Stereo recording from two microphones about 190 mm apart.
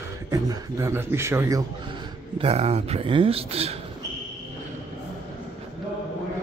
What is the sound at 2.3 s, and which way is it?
Speech, 35° right (ahead or behind).